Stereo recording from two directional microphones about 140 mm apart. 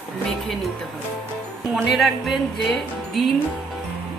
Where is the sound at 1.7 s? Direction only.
Centre (ahead or behind).